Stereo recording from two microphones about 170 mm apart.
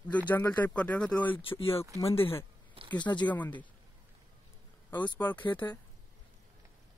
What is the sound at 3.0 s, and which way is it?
Speech, 25° left (ahead or behind).